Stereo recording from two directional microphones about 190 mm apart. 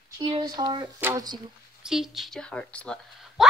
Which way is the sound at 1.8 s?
5° right (ahead or behind).